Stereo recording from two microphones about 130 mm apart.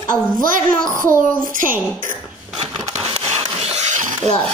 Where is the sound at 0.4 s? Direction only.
90° right.